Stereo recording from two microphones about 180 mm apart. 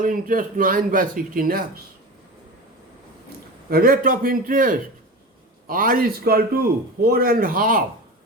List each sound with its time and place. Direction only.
0.0 s speech: 50° right (ahead or behind)
3.7 s a man's voice: 55° right (ahead or behind)